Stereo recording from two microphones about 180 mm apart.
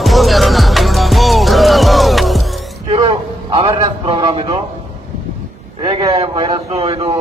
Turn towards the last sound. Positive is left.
turn(degrees=-30)  # may be behind; listen again after turning